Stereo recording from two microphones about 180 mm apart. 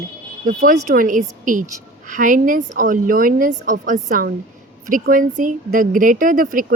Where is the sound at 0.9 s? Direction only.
45° right (ahead or behind).